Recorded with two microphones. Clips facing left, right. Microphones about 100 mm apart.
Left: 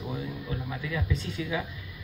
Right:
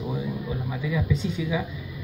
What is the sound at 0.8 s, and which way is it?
Speech, 20° right (ahead or behind).